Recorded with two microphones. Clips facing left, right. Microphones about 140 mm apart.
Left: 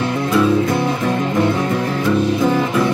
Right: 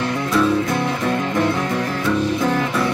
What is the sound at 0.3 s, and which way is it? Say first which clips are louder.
Music: left 3 dB; 10° left (ahead or behind).